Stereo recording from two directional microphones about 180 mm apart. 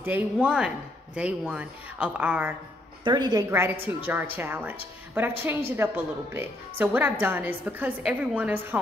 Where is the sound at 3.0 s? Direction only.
25° right (ahead or behind).